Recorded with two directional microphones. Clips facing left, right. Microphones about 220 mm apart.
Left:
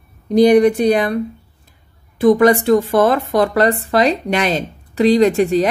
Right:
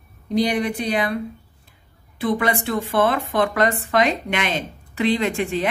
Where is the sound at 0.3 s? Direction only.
45° left (ahead or behind).